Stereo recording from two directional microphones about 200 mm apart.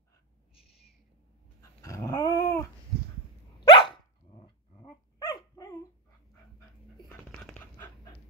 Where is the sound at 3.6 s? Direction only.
25° left (ahead or behind).